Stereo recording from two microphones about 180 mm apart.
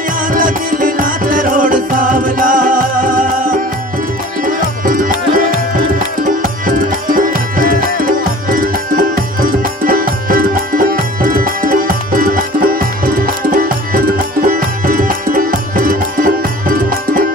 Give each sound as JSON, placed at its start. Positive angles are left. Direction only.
{"t": 0.3, "sound": "music", "side_deg": -50}
{"t": 4.8, "sound": "music", "side_deg": -50}